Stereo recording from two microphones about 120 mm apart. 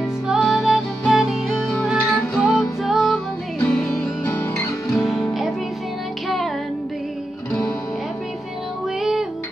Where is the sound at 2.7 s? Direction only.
Centre (ahead or behind).